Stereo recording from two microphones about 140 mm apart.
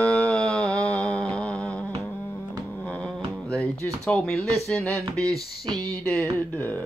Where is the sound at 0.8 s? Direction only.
5° left (ahead or behind).